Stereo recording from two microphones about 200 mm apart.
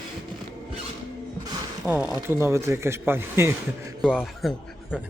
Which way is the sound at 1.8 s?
10° right (ahead or behind).